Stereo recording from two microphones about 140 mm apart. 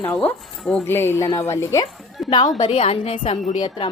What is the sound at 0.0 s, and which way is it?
Speech, 10° left (ahead or behind).